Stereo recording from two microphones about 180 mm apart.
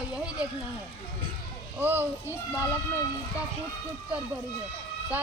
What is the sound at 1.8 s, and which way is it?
Speech, 10° right (ahead or behind).